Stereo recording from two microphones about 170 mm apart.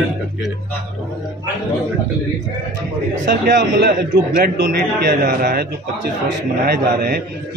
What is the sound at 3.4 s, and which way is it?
A man's voice, 55° right (ahead or behind).